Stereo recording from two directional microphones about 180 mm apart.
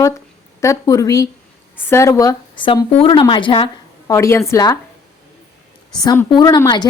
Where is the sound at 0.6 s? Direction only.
20° left (ahead or behind).